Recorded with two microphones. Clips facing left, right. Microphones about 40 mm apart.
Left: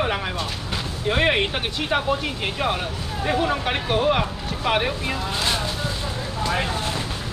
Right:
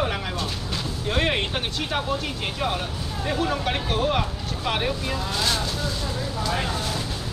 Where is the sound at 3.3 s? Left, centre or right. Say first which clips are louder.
Left 3 dB; centre.